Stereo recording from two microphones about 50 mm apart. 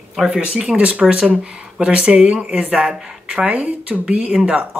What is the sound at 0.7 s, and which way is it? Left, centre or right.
Speech, right.